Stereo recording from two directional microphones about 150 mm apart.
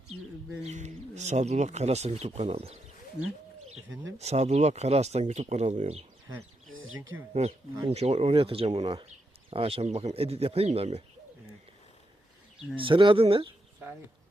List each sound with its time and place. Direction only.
0.6 s speech: 50° right (ahead or behind)
4.2 s speech: 45° right (ahead or behind)
7.4 s speech: 45° right (ahead or behind)
12.7 s speech: 35° right (ahead or behind)